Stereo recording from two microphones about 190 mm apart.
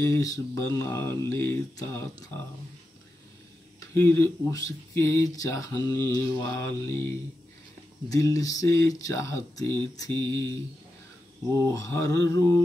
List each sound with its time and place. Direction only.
0.0 s speech: 15° left (ahead or behind)
3.9 s speech: 15° left (ahead or behind)
8.1 s speech: 15° left (ahead or behind)
11.5 s speech: 15° left (ahead or behind)